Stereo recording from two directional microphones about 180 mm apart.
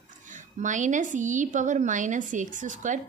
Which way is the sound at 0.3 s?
45° right (ahead or behind).